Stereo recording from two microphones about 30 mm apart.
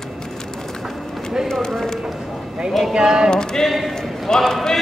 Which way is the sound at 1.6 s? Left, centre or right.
Centre.